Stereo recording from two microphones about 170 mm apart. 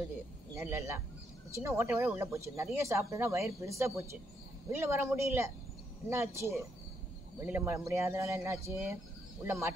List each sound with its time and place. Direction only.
0.6 s speech: 15° right (ahead or behind)